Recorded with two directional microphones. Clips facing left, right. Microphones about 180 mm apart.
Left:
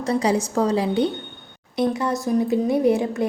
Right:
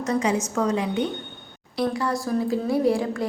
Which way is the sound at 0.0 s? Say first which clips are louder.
Left 2 dB; 35° left (ahead or behind).